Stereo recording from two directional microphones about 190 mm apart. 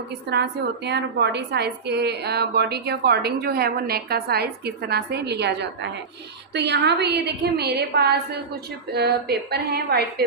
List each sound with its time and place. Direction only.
0.3 s a woman's voice: 60° right (ahead or behind)